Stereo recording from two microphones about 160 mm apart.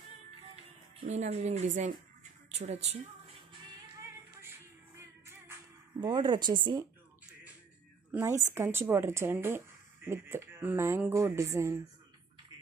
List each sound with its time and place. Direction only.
1.0 s speech: 45° right (ahead or behind)
5.2 s music: 15° right (ahead or behind)
5.9 s speech: 25° right (ahead or behind)
8.1 s a woman's voice: 15° right (ahead or behind)